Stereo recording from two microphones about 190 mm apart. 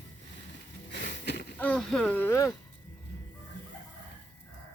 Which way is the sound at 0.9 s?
65° left (ahead or behind).